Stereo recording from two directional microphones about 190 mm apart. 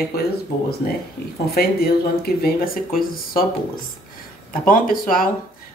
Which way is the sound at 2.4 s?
50° left (ahead or behind).